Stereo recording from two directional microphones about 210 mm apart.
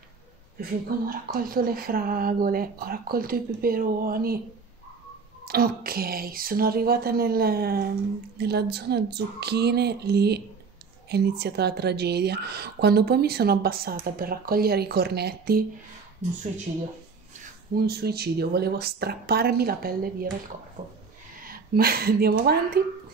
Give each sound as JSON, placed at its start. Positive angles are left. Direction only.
{"t": 0.6, "sound": "a woman's voice", "side_deg": -45}
{"t": 5.4, "sound": "a woman's voice", "side_deg": -45}
{"t": 17.7, "sound": "a woman's voice", "side_deg": -50}
{"t": 21.4, "sound": "a woman's voice", "side_deg": -45}